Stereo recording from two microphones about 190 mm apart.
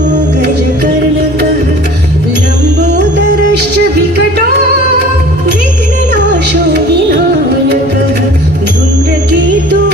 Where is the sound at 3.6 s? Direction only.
60° right (ahead or behind).